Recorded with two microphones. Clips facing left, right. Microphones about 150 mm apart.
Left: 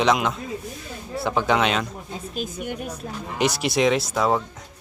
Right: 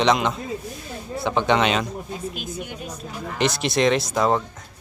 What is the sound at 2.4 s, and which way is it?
Speech, 45° left (ahead or behind).